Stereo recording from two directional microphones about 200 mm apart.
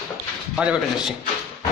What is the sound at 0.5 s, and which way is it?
Speech, 5° right (ahead or behind).